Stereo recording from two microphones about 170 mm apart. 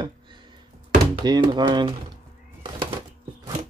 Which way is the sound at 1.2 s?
25° right (ahead or behind).